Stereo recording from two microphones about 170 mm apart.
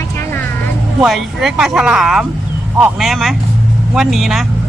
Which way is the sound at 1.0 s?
Centre (ahead or behind).